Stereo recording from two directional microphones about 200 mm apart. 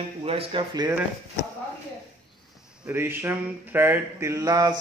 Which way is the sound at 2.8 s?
10° right (ahead or behind).